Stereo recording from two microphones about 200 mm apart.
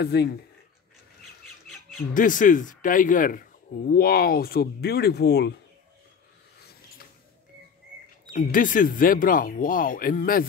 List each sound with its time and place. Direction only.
0.0 s speech: 55° left (ahead or behind)
2.1 s speech: 40° left (ahead or behind)
8.3 s speech: 45° left (ahead or behind)